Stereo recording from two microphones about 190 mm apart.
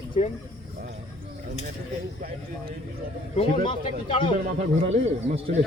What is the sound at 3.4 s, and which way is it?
Speech, 25° left (ahead or behind).